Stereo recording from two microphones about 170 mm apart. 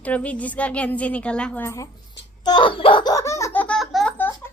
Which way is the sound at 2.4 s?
25° left (ahead or behind).